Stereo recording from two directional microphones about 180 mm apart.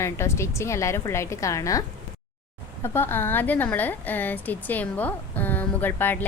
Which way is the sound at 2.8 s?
10° left (ahead or behind).